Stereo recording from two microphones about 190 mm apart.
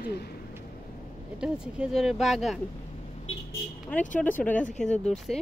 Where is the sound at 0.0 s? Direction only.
55° left (ahead or behind).